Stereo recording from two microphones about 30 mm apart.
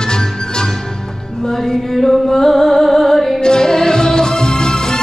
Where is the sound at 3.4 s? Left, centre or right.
Left.